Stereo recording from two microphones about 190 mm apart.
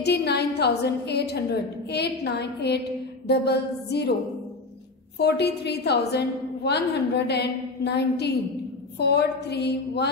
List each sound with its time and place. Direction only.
0.0 s a woman's voice: 60° left (ahead or behind)
5.2 s a woman's voice: 60° left (ahead or behind)